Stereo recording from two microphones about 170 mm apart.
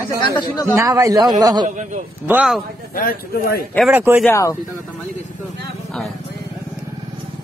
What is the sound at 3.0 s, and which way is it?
Speech, 60° left (ahead or behind).